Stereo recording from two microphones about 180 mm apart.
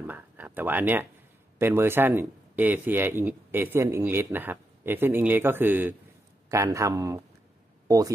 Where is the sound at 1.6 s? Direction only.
15° right (ahead or behind).